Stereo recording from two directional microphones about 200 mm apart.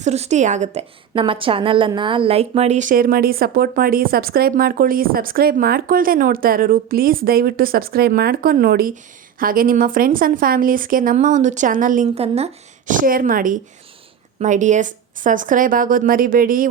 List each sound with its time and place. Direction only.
0.0 s a woman's voice: 35° right (ahead or behind)
12.9 s a woman's voice: 45° right (ahead or behind)